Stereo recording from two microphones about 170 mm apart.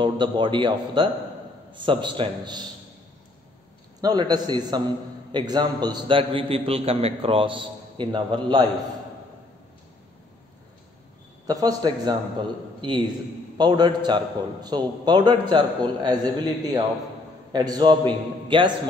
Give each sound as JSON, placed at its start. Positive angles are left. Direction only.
{"t": 0.0, "sound": "a man's voice", "side_deg": -30}
{"t": 4.0, "sound": "a man's voice", "side_deg": -25}
{"t": 11.4, "sound": "a man's voice", "side_deg": -25}